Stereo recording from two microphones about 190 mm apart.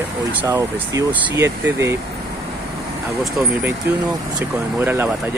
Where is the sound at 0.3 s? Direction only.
10° right (ahead or behind).